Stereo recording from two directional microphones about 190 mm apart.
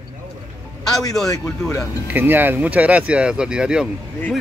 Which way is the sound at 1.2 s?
Centre (ahead or behind).